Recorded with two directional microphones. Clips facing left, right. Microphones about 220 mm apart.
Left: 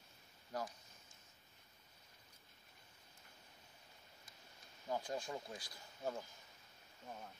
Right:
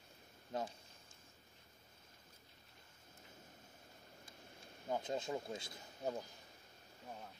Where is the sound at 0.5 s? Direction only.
25° right (ahead or behind).